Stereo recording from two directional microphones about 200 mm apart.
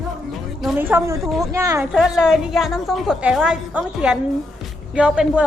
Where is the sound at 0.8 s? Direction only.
10° right (ahead or behind).